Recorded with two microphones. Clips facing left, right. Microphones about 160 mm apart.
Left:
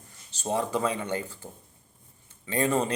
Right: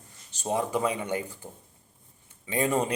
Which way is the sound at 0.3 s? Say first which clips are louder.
Even; 15° right (ahead or behind).